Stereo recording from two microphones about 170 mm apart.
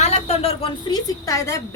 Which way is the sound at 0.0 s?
40° left (ahead or behind).